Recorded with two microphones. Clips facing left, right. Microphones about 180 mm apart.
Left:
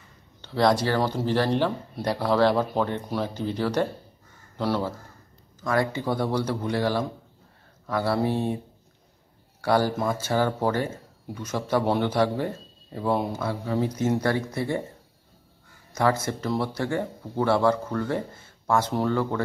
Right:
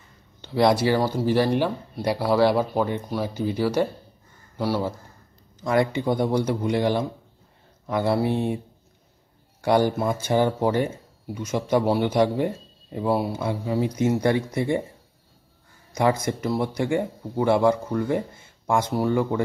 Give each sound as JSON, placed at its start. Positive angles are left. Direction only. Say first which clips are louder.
{"t": 0.4, "sound": "speech", "louder": "right 2 dB", "side_deg": -15}
{"t": 5.6, "sound": "speech", "louder": "right 3 dB", "side_deg": -20}
{"t": 9.6, "sound": "speech", "louder": "right 2 dB", "side_deg": -20}
{"t": 15.9, "sound": "speech", "louder": "right 2 dB", "side_deg": -15}